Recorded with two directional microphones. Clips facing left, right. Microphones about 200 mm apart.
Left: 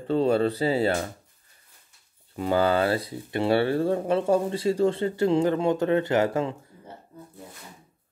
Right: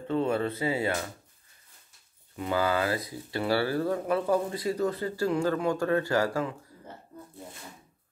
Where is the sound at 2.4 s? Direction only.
30° left (ahead or behind).